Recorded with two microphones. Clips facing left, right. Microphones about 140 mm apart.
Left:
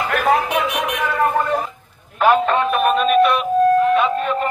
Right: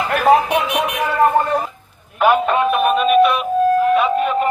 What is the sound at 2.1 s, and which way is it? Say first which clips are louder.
Music: even; 5° right (ahead or behind).